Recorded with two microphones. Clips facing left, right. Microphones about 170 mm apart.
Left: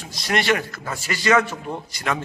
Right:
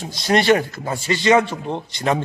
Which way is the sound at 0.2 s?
30° right (ahead or behind).